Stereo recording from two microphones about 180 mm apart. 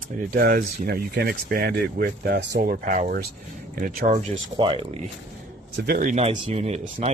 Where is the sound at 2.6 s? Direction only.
45° right (ahead or behind).